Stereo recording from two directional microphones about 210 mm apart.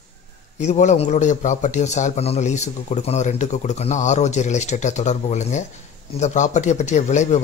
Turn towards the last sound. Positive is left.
turn(degrees=35)  # may be behind; listen again after turning